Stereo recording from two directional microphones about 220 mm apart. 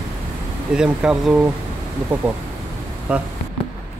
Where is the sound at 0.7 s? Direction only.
5° right (ahead or behind).